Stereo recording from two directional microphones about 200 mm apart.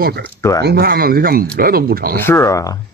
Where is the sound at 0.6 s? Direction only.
50° right (ahead or behind).